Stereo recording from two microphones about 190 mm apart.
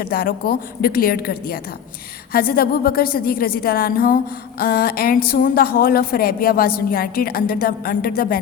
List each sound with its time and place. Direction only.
0.0 s a woman's voice: 50° left (ahead or behind)